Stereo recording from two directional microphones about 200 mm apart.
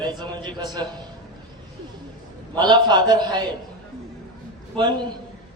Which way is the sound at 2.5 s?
20° right (ahead or behind).